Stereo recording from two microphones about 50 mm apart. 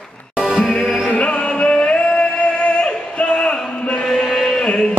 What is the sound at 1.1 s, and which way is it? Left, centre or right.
Music, left.